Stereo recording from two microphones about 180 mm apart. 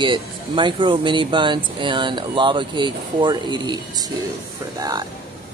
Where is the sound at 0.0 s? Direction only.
25° right (ahead or behind).